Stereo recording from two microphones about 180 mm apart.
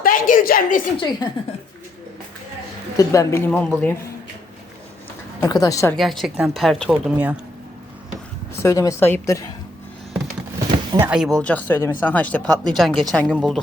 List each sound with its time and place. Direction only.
0.0 s a sound: 50° left (ahead or behind)
0.9 s a woman's voice: 25° left (ahead or behind)
3.0 s speech: 20° left (ahead or behind)
5.4 s a woman's voice: 20° left (ahead or behind)
6.0 s speech: centre (ahead or behind)
8.6 s speech: 15° left (ahead or behind)
10.9 s speech: 15° right (ahead or behind)
11.2 s speech: 5° left (ahead or behind)